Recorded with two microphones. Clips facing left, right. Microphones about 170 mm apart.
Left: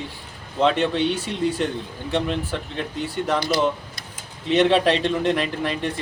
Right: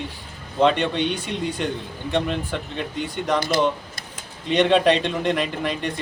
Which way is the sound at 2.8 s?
5° left (ahead or behind).